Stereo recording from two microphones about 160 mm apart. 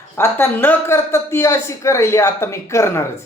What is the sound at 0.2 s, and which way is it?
Speech, 15° left (ahead or behind).